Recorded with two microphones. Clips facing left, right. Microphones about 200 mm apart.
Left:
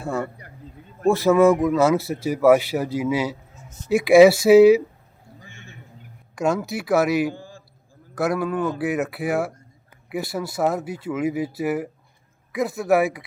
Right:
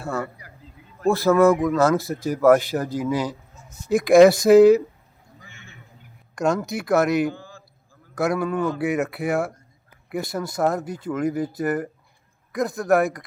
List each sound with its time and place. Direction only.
0.0 s speech: 15° left (ahead or behind)
5.5 s a sound: 50° left (ahead or behind)
6.3 s speech: 5° left (ahead or behind)